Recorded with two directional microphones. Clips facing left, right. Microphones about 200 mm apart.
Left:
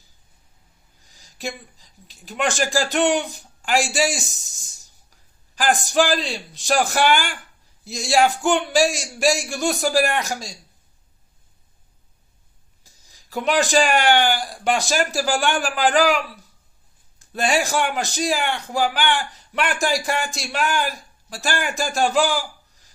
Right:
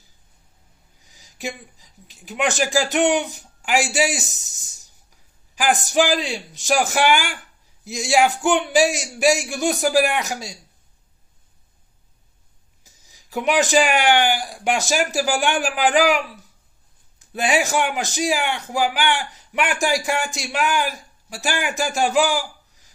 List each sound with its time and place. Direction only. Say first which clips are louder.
1.0 s a man's voice: even; 15° right (ahead or behind)
5.8 s a man's voice: even; 15° right (ahead or behind)
12.8 s a man's voice: right 1 dB; 15° right (ahead or behind)